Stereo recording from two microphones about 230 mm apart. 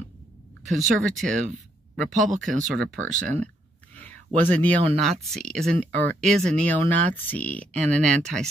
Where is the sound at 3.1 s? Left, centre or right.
Right.